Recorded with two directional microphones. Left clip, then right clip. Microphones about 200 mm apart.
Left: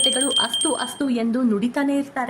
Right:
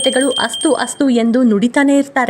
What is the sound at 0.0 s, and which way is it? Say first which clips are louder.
Speech: right 5 dB; 35° right (ahead or behind).